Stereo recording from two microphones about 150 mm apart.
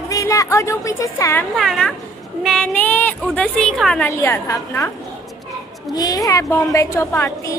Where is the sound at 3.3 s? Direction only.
5° left (ahead or behind).